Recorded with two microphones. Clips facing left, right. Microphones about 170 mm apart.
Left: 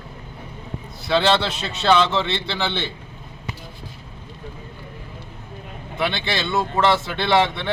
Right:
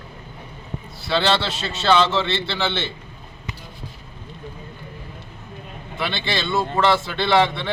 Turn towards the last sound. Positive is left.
turn(degrees=20)  # may be behind; listen again after turning